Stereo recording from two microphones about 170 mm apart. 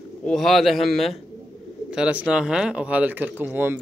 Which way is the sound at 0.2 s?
Centre (ahead or behind).